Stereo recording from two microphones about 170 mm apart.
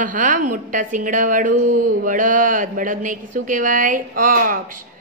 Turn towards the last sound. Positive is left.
turn(degrees=-55)  # may be behind; listen again after turning